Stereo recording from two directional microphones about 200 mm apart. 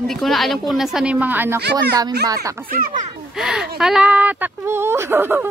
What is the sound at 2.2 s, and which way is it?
Speech, 15° right (ahead or behind).